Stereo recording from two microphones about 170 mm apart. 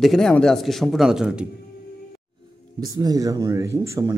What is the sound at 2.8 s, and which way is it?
Speech, 20° right (ahead or behind).